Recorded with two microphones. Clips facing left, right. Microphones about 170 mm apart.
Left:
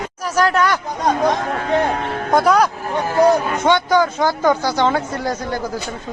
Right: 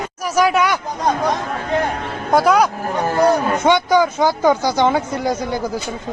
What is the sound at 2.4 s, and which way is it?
A man's voice, 5° right (ahead or behind).